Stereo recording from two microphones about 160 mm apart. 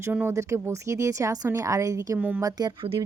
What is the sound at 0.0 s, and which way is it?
A woman's voice, 15° right (ahead or behind).